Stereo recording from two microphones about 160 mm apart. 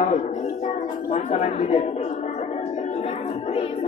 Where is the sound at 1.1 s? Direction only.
45° left (ahead or behind).